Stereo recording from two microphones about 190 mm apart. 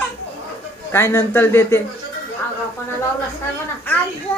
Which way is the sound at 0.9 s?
15° left (ahead or behind).